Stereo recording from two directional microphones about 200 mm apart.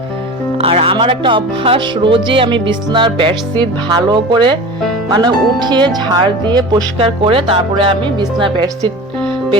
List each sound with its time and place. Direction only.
0.6 s music: 30° right (ahead or behind)